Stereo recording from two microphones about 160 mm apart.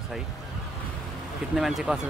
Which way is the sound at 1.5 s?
Centre (ahead or behind).